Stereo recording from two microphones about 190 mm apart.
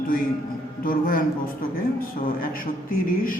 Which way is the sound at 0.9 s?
50° left (ahead or behind).